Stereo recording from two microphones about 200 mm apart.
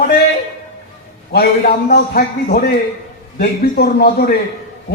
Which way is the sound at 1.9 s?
50° left (ahead or behind).